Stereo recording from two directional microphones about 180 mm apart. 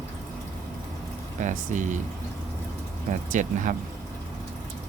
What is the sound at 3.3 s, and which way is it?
Speech, 45° right (ahead or behind).